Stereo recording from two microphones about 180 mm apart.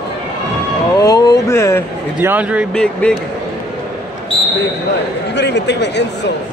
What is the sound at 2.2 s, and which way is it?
Speech, 10° right (ahead or behind).